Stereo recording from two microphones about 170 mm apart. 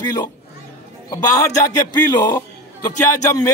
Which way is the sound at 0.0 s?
20° left (ahead or behind).